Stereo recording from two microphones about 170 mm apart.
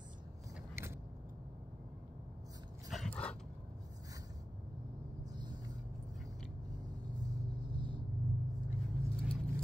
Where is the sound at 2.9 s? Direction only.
5° left (ahead or behind).